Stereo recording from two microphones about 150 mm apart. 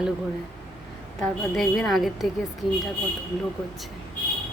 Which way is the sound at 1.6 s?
Centre (ahead or behind).